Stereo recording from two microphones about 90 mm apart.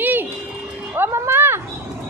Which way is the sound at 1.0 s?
30° right (ahead or behind).